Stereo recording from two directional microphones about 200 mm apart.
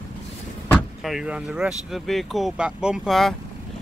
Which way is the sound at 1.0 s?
5° right (ahead or behind).